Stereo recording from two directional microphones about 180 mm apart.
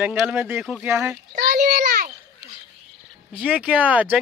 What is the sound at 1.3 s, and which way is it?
Speech, 55° right (ahead or behind).